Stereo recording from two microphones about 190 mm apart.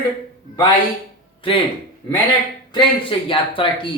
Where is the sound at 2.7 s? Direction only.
25° left (ahead or behind).